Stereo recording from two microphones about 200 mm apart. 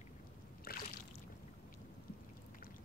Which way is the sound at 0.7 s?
45° left (ahead or behind).